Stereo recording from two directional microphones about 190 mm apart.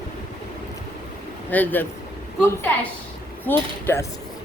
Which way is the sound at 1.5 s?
10° left (ahead or behind).